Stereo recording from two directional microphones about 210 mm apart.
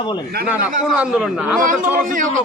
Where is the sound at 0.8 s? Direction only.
5° right (ahead or behind).